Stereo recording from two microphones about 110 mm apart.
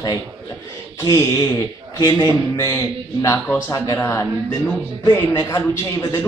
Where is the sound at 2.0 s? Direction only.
35° left (ahead or behind).